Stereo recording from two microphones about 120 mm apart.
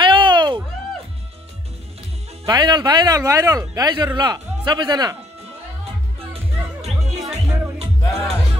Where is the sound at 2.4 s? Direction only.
35° right (ahead or behind).